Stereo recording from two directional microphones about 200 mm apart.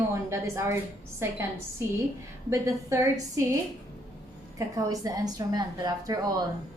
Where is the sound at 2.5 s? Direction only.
15° right (ahead or behind).